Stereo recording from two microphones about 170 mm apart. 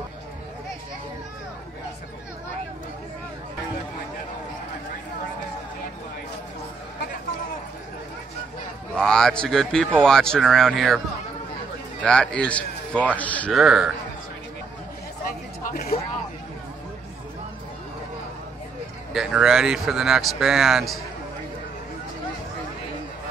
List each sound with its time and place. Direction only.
8.9 s speech: 5° left (ahead or behind)
12.0 s a man's voice: 5° left (ahead or behind)
13.5 s speech: 5° right (ahead or behind)
15.7 s a sound: 60° left (ahead or behind)
19.1 s speech: 5° right (ahead or behind)